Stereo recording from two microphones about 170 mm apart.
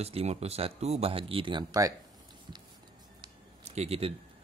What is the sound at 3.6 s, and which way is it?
Speech, 40° right (ahead or behind).